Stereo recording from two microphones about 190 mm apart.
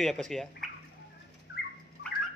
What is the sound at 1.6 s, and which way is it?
Dog, 60° left (ahead or behind).